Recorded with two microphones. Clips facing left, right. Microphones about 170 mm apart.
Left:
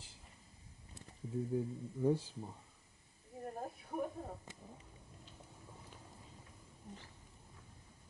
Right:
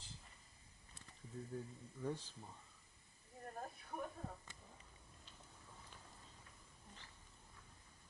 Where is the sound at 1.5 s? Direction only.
15° left (ahead or behind).